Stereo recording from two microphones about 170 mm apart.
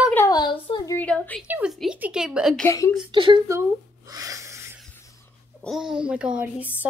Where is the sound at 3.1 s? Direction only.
30° right (ahead or behind).